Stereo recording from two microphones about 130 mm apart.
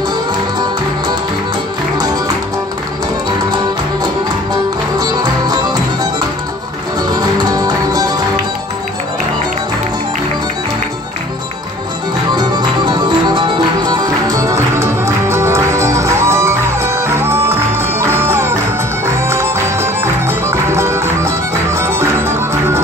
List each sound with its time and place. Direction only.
4.9 s music: 30° right (ahead or behind)
7.0 s music: 30° right (ahead or behind)
12.4 s music: 35° right (ahead or behind); by 22.8 s 20° right (ahead or behind)